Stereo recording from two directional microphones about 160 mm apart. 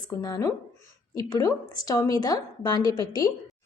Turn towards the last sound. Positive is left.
turn(degrees=25)  # may be behind; listen again after turning